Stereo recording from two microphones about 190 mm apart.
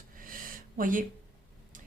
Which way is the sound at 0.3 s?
45° right (ahead or behind).